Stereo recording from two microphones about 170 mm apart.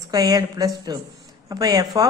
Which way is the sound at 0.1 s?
20° right (ahead or behind).